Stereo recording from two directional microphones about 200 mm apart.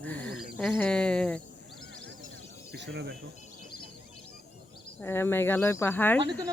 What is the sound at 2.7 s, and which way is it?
Speech, 60° right (ahead or behind).